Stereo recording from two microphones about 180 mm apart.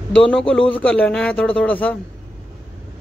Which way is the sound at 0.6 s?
30° left (ahead or behind).